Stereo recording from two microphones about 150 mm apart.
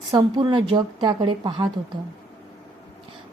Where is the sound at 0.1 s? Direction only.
30° right (ahead or behind).